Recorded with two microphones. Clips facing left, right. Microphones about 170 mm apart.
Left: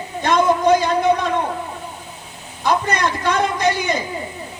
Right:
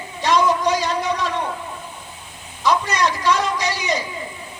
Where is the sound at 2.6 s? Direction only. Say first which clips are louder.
Even; 55° left (ahead or behind).